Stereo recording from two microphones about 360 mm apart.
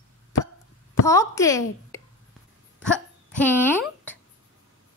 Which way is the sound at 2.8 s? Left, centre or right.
Centre.